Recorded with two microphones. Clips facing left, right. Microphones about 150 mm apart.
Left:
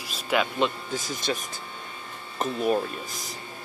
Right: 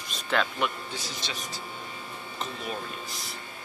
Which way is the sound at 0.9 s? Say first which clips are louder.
Left 7 dB; 45° left (ahead or behind).